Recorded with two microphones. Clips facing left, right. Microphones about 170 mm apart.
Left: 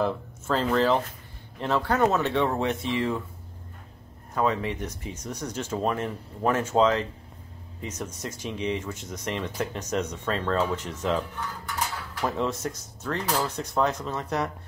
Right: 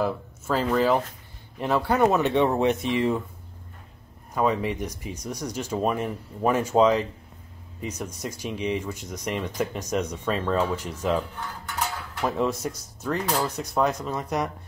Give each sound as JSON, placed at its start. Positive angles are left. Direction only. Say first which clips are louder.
{"t": 0.0, "sound": "speech", "louder": "even", "side_deg": -10}
{"t": 4.3, "sound": "speech", "louder": "right 2 dB", "side_deg": -10}